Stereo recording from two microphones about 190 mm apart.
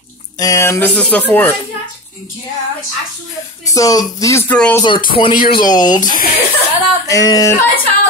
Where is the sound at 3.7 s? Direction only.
20° left (ahead or behind).